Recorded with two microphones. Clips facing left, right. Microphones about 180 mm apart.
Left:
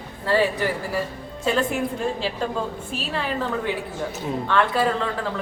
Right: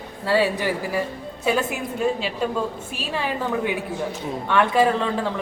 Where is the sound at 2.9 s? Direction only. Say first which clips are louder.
Even; 15° right (ahead or behind).